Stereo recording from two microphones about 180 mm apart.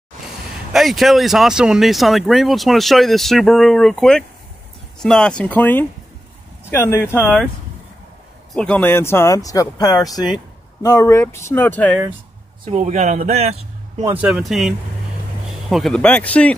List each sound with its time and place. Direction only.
0.7 s speech: centre (ahead or behind)
8.5 s speech: 5° left (ahead or behind)
12.7 s speech: 40° right (ahead or behind)
14.0 s speech: 5° right (ahead or behind)
15.7 s speech: 5° left (ahead or behind)